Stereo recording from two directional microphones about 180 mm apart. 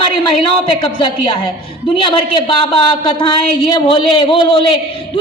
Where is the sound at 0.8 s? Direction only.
30° left (ahead or behind).